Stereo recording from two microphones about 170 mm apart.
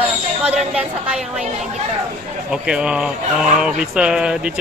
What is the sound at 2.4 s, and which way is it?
Speech, 5° right (ahead or behind).